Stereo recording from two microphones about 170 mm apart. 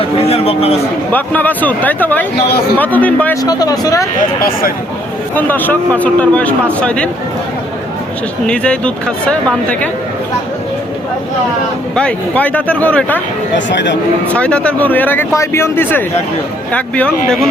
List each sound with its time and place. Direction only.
0.2 s speech: 35° left (ahead or behind)
1.1 s a man's voice: 10° left (ahead or behind)
3.4 s speech: 20° left (ahead or behind)
4.4 s speech: 60° left (ahead or behind)
5.3 s a man's voice: 10° left (ahead or behind)
8.4 s a man's voice: 5° left (ahead or behind)
11.9 s a man's voice: 5° left (ahead or behind)
13.7 s speech: 90° left
14.3 s a man's voice: 5° left (ahead or behind)